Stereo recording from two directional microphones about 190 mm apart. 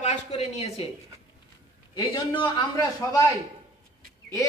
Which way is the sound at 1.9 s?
25° left (ahead or behind).